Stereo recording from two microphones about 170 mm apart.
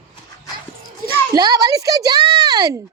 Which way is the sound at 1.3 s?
20° right (ahead or behind).